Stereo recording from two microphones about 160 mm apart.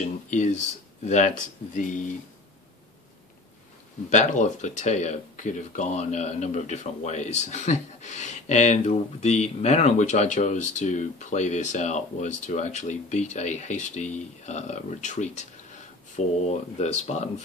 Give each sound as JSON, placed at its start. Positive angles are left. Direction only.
{"t": 0.3, "sound": "speech", "side_deg": 50}
{"t": 4.1, "sound": "speech", "side_deg": 50}